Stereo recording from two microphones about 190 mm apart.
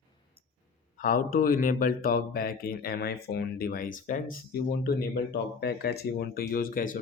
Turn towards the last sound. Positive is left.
turn(degrees=45)  # may be behind; listen again after turning